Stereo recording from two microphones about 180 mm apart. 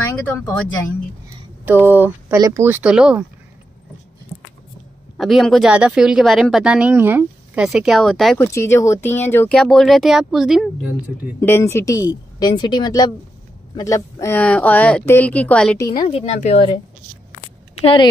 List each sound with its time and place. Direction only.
1.6 s speech: 10° right (ahead or behind)
5.1 s speech: centre (ahead or behind)
8.4 s speech: 15° left (ahead or behind); by 10.7 s centre (ahead or behind)
11.4 s speech: 15° left (ahead or behind)
16.0 s speech: 35° left (ahead or behind)